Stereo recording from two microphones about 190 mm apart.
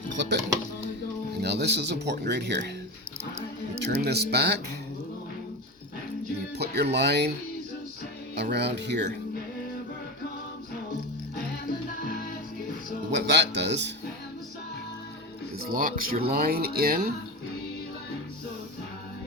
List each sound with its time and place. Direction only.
1.4 s speech: 60° right (ahead or behind)
3.8 s speech: 60° right (ahead or behind)
6.6 s speech: 60° right (ahead or behind)
8.4 s speech: 60° right (ahead or behind)
13.1 s music: 65° right (ahead or behind)
15.7 s speech: 50° right (ahead or behind)